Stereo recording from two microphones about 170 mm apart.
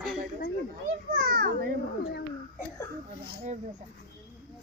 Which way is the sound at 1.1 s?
65° right (ahead or behind).